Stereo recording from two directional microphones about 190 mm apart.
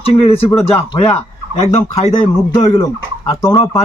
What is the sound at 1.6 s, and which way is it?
Speech, 35° left (ahead or behind).